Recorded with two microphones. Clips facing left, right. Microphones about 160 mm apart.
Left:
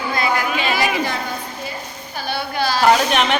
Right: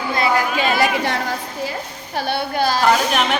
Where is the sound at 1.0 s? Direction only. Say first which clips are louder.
Right 2 dB; 80° right.